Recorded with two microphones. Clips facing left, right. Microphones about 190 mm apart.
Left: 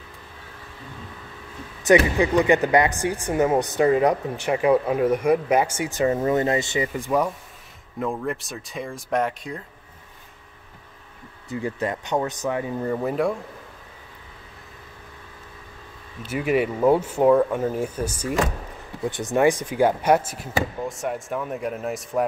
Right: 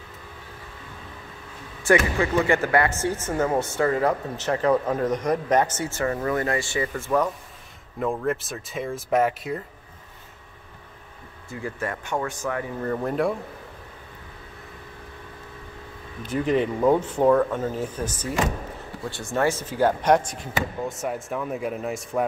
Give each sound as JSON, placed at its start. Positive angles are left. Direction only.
{"t": 2.1, "sound": "speech", "side_deg": 15}
{"t": 8.0, "sound": "speech", "side_deg": 0}
{"t": 11.5, "sound": "speech", "side_deg": 20}
{"t": 12.9, "sound": "speech", "side_deg": 5}
{"t": 16.3, "sound": "speech", "side_deg": 10}